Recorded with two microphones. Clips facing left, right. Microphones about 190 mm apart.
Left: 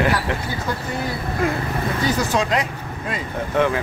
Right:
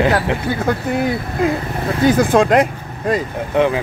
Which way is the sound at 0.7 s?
55° right (ahead or behind).